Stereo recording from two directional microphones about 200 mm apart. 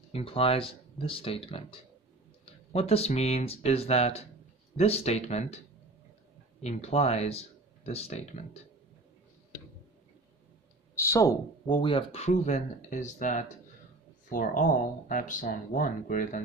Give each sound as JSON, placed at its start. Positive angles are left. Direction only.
{"t": 0.1, "sound": "speech", "side_deg": 30}
{"t": 6.6, "sound": "speech", "side_deg": 30}
{"t": 11.0, "sound": "speech", "side_deg": 15}